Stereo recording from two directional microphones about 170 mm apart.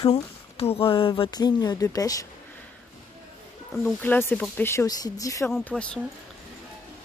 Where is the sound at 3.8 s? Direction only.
10° left (ahead or behind).